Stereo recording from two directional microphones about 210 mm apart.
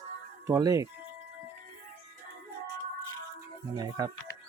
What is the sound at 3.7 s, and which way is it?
Speech, 20° right (ahead or behind).